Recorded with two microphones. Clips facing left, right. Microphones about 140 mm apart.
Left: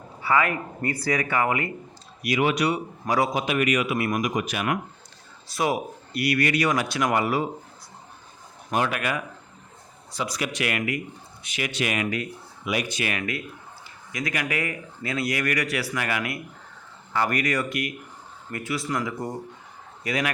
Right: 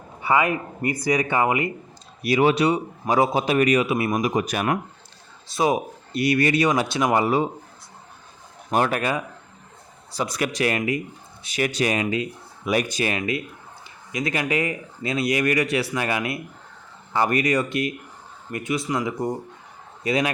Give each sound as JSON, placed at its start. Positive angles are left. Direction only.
{"t": 0.2, "sound": "speech", "side_deg": -20}
{"t": 2.2, "sound": "a man's voice", "side_deg": -35}
{"t": 5.5, "sound": "speech", "side_deg": -25}
{"t": 8.7, "sound": "a man's voice", "side_deg": -40}
{"t": 10.2, "sound": "speech", "side_deg": -55}
{"t": 10.5, "sound": "a man's voice", "side_deg": -35}
{"t": 12.6, "sound": "a man's voice", "side_deg": -45}
{"t": 13.1, "sound": "speech", "side_deg": -25}